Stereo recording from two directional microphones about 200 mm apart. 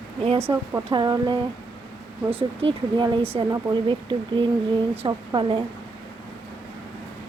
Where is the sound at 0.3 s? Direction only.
10° right (ahead or behind).